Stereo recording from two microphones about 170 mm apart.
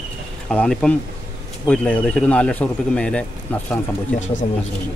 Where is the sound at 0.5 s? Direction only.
5° left (ahead or behind).